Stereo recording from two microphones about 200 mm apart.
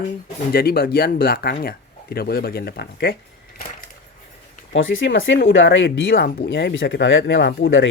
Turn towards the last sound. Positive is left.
turn(degrees=70)  # may be behind; listen again after turning